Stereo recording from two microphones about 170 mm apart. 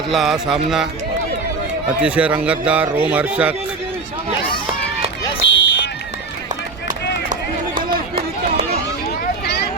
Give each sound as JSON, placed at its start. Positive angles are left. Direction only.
{"t": 0.1, "sound": "speech", "side_deg": 0}
{"t": 2.0, "sound": "a man's voice", "side_deg": -5}
{"t": 5.5, "sound": "run", "side_deg": 90}
{"t": 7.8, "sound": "run", "side_deg": -60}
{"t": 9.0, "sound": "a sound", "side_deg": 65}